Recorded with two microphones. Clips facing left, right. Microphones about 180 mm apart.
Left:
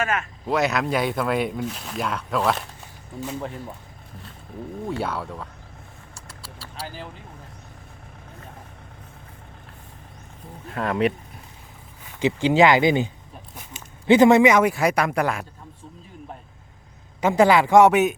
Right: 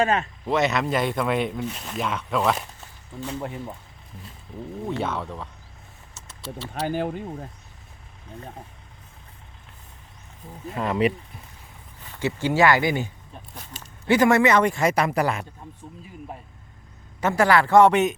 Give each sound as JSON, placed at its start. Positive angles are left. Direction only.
{"t": 0.0, "sound": "speech", "side_deg": -35}
{"t": 0.4, "sound": "speech", "side_deg": 0}
{"t": 4.9, "sound": "speech", "side_deg": 5}
{"t": 6.8, "sound": "speech", "side_deg": -60}
{"t": 10.7, "sound": "speech", "side_deg": 0}
{"t": 12.2, "sound": "a man's voice", "side_deg": 15}
{"t": 14.1, "sound": "speech", "side_deg": 20}
{"t": 17.2, "sound": "a man's voice", "side_deg": 15}